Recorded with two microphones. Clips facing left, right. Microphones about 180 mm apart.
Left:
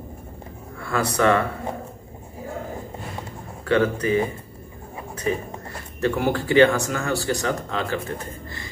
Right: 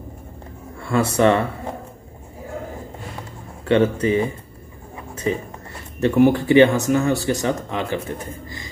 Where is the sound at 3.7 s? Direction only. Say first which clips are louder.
Right 3 dB; 25° right (ahead or behind).